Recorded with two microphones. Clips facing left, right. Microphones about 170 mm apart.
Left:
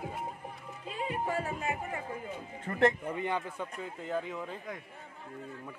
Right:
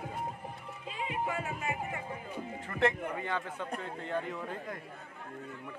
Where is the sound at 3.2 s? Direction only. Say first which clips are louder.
Left 2 dB; 15° left (ahead or behind).